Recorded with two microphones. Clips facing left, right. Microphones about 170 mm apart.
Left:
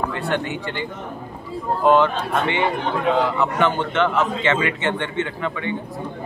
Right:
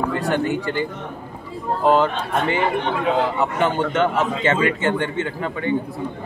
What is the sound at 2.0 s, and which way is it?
Speech, 40° right (ahead or behind).